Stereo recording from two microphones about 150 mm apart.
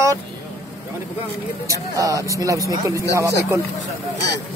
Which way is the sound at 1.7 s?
20° right (ahead or behind).